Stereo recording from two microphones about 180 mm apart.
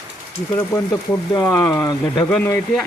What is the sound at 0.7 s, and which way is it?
Speech, 20° left (ahead or behind).